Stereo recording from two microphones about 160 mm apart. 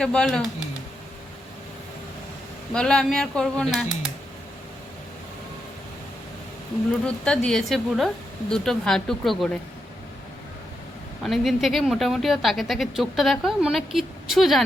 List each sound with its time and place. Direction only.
0.0 s speech: 5° left (ahead or behind)
2.7 s speech: 5° left (ahead or behind)
7.0 s speech: 5° left (ahead or behind)
11.2 s speech: centre (ahead or behind)